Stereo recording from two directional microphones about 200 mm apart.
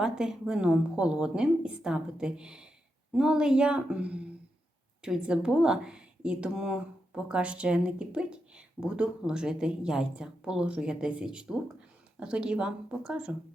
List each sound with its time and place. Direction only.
0.0 s speech: 5° right (ahead or behind)